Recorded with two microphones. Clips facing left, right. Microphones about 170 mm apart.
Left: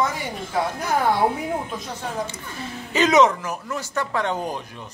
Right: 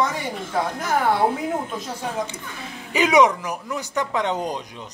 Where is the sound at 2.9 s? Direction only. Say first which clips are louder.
Even; 10° right (ahead or behind).